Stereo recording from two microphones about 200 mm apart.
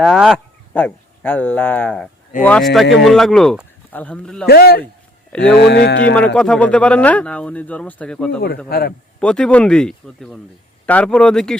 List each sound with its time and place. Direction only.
0.0 s speech: centre (ahead or behind)
4.4 s a man's voice: 55° left (ahead or behind)
6.1 s speech: 5° left (ahead or behind)
8.7 s a man's voice: 50° left (ahead or behind)
9.2 s speech: 5° left (ahead or behind)